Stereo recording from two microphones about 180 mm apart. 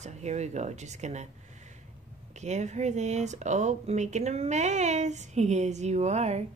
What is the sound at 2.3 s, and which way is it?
Speech, 40° right (ahead or behind).